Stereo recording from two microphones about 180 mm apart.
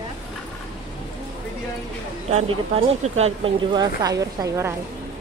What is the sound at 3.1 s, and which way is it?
A woman's voice, 35° right (ahead or behind).